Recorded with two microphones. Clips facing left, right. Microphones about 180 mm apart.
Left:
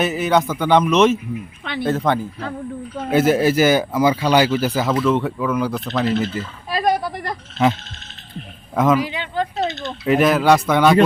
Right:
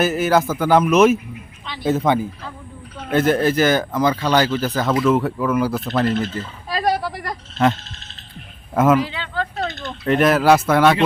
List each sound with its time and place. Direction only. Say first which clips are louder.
0.0 s a man's voice: right 1 dB; centre (ahead or behind)
1.6 s speech: left 2 dB; 60° left (ahead or behind)
1.9 s speech: right 2 dB; 10° right (ahead or behind)
3.1 s speech: left 1 dB; 10° left (ahead or behind)
4.9 s a man's voice: right 1 dB; 5° right (ahead or behind)
6.7 s a sound: left 1 dB; 15° left (ahead or behind)
8.7 s speech: right 1 dB; 5° right (ahead or behind)
9.0 s speech: left 1 dB; 15° left (ahead or behind)
10.1 s a man's voice: even; centre (ahead or behind)